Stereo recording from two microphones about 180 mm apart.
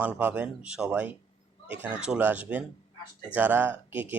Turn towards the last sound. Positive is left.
turn(degrees=-10)  # may be behind; listen again after turning